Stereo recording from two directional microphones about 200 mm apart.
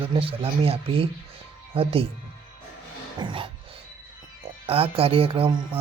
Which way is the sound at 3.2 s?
25° right (ahead or behind).